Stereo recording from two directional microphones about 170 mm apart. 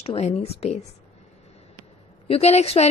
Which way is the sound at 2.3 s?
40° left (ahead or behind).